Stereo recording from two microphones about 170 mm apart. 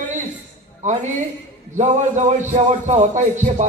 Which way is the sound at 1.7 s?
45° right (ahead or behind).